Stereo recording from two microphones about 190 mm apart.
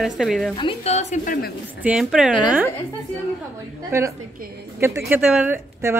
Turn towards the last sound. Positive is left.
turn(degrees=-10)  # may be behind; listen again after turning